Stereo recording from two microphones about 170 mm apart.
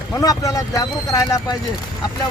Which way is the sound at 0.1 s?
20° left (ahead or behind).